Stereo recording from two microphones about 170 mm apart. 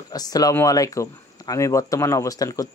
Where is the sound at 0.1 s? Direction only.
20° left (ahead or behind).